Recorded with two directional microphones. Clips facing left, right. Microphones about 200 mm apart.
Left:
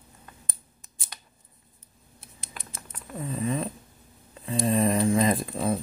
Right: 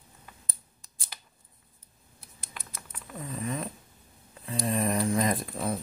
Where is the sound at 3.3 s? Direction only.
30° left (ahead or behind).